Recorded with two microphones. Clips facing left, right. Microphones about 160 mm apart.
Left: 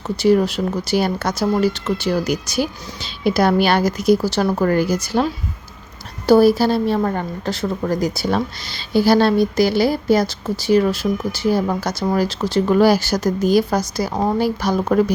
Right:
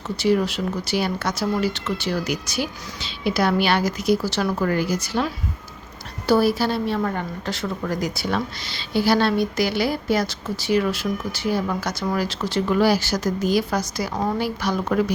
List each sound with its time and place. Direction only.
0.2 s a woman's voice: 40° left (ahead or behind)